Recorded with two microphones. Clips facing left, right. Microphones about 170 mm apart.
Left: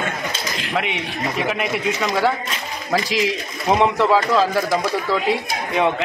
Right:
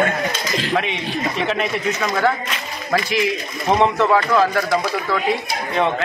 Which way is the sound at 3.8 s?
10° left (ahead or behind).